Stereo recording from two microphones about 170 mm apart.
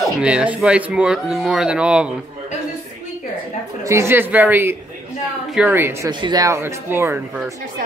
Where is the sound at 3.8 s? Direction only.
15° right (ahead or behind).